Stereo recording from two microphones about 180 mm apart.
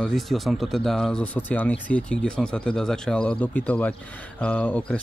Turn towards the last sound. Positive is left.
turn(degrees=10)  # may be behind; listen again after turning